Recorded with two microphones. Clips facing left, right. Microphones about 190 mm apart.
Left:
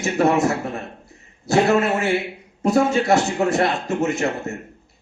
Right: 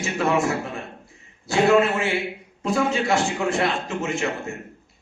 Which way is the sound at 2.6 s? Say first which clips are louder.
Left 5 dB; 40° left (ahead or behind).